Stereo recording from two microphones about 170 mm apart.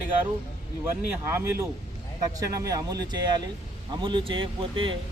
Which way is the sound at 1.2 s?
15° right (ahead or behind).